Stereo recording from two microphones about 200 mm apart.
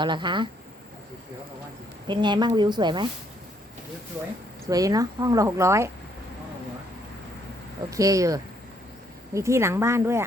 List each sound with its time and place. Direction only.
0.0 s a woman's voice: 25° right (ahead or behind)
2.0 s a woman's voice: 20° right (ahead or behind)
4.7 s speech: 15° right (ahead or behind)
7.9 s speech: 15° right (ahead or behind)